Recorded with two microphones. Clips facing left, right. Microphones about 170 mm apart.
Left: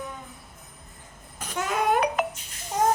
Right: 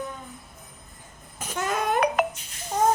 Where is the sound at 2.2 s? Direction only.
65° right (ahead or behind).